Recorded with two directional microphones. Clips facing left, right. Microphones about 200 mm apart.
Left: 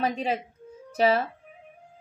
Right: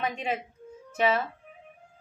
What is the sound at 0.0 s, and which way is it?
A woman's voice, 35° left (ahead or behind).